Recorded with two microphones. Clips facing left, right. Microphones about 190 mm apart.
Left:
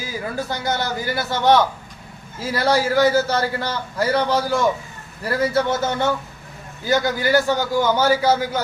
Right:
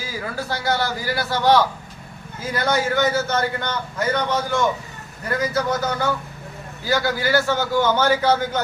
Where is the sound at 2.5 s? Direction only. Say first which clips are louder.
Left 2 dB; 30° left (ahead or behind).